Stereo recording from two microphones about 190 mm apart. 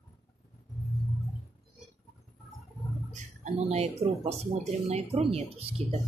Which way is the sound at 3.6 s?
35° right (ahead or behind).